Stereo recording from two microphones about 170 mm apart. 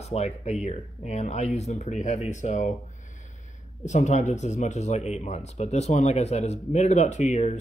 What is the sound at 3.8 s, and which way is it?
Speech, 45° left (ahead or behind).